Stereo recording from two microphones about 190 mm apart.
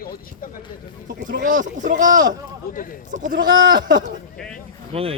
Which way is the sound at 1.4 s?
40° right (ahead or behind).